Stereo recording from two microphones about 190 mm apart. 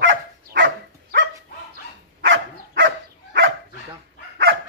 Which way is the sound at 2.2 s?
65° right (ahead or behind).